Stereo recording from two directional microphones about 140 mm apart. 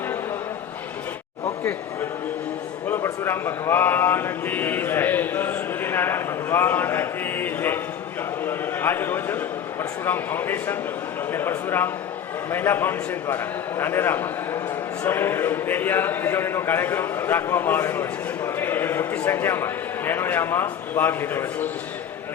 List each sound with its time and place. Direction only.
2.9 s a man's voice: 15° left (ahead or behind)
8.4 s a sound: 15° left (ahead or behind)
10.1 s a man's voice: 15° left (ahead or behind)